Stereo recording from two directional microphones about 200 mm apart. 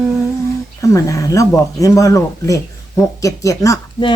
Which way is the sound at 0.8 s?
15° left (ahead or behind).